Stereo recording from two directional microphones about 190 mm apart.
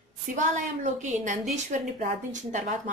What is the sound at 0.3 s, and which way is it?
A woman's voice, 40° right (ahead or behind).